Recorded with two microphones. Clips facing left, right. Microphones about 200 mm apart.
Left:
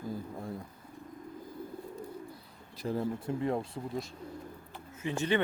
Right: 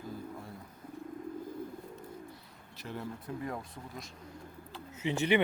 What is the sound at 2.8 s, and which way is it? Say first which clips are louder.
Speech: left 8 dB; 30° left (ahead or behind).